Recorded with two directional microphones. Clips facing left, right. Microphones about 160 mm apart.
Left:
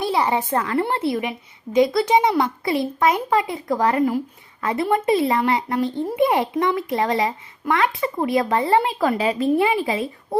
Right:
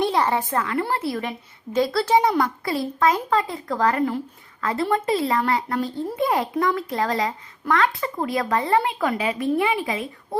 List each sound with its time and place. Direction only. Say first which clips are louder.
0.0 s a sound: even; 10° left (ahead or behind)
0.5 s speech: left 2 dB; 30° left (ahead or behind)
1.2 s a woman's voice: left 2 dB; 15° left (ahead or behind); by 10.1 s 30° left (ahead or behind)